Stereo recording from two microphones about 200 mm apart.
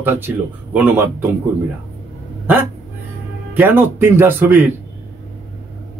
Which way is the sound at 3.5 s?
10° right (ahead or behind).